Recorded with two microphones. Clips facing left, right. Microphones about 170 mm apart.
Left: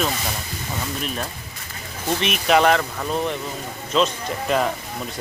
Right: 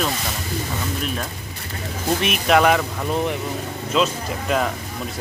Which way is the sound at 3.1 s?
15° right (ahead or behind).